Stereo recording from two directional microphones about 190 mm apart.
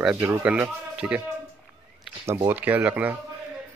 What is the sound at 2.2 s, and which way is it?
Speech, 15° right (ahead or behind).